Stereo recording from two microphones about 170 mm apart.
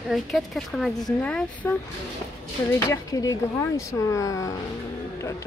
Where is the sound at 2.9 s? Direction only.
20° left (ahead or behind).